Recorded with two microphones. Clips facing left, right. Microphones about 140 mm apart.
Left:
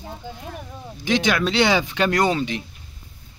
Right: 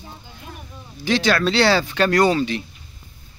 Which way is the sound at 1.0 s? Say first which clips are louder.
Right 2 dB; 15° left (ahead or behind).